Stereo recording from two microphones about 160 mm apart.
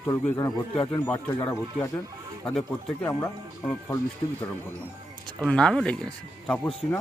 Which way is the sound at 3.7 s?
15° left (ahead or behind).